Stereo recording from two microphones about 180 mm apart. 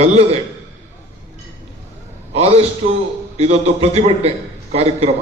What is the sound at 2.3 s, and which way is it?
A man's voice, 35° right (ahead or behind).